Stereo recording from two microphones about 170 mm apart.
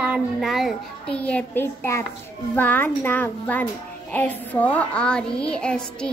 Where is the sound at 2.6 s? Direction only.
10° left (ahead or behind).